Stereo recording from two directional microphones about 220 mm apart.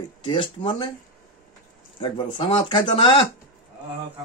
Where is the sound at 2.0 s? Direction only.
25° left (ahead or behind).